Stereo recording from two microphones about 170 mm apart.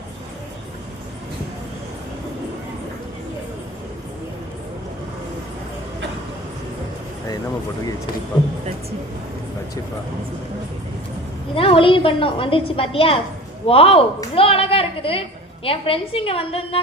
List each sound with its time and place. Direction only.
11.5 s a woman's voice: 35° left (ahead or behind)